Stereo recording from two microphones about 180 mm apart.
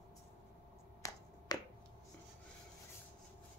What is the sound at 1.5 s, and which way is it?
Finger snapping, 20° left (ahead or behind).